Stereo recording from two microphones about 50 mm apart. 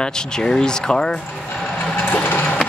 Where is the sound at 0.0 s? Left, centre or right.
Centre.